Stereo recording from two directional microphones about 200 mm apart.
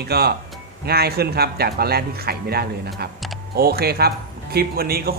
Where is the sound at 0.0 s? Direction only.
55° right (ahead or behind).